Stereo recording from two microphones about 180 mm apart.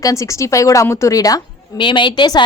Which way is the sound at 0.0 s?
15° left (ahead or behind).